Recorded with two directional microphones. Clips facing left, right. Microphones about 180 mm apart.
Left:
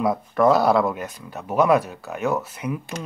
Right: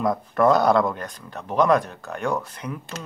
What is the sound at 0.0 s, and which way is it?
Speech, 5° left (ahead or behind).